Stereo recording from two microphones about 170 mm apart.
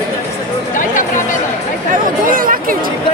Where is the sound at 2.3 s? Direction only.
55° right (ahead or behind).